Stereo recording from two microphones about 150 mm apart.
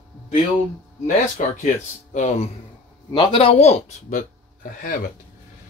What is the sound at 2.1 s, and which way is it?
Speech, 50° left (ahead or behind).